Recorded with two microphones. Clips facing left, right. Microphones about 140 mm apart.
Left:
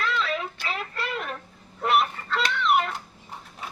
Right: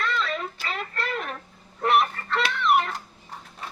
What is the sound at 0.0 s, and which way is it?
Child singing, centre (ahead or behind).